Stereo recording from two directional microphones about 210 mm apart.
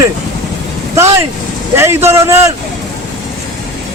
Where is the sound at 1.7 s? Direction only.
10° right (ahead or behind).